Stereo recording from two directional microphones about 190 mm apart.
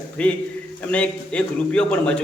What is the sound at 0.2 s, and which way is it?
A man's voice, 5° left (ahead or behind).